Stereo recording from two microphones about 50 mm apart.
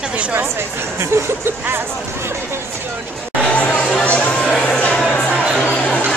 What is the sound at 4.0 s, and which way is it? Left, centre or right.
Speech, left.